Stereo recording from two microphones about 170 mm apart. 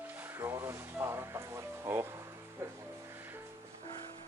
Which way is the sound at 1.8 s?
15° right (ahead or behind).